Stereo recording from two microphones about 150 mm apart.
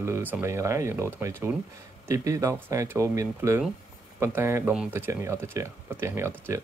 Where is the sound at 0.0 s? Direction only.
15° right (ahead or behind).